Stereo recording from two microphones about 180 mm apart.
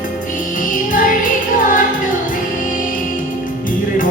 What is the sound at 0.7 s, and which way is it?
Music, 50° left (ahead or behind).